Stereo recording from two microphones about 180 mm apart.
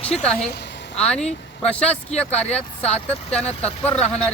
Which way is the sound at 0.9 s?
5° left (ahead or behind).